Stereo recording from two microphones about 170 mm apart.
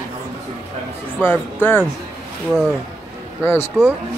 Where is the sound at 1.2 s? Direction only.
10° left (ahead or behind).